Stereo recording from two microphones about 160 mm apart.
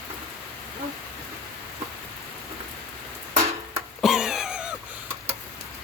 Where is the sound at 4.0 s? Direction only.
Centre (ahead or behind).